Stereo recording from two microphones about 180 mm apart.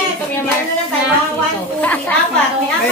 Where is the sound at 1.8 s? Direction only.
10° left (ahead or behind).